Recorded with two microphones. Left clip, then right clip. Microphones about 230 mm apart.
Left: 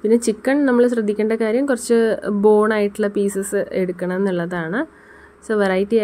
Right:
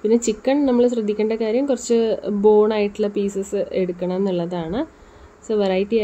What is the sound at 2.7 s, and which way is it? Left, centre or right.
Speech, left.